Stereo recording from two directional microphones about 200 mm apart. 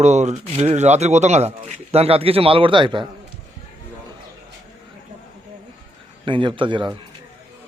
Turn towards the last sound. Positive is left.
turn(degrees=-25)  # may be behind; listen again after turning